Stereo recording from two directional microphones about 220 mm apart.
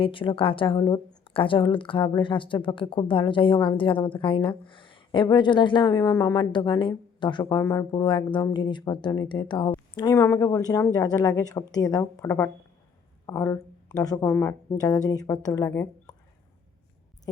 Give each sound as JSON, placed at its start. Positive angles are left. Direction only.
{"t": 0.0, "sound": "speech", "side_deg": 25}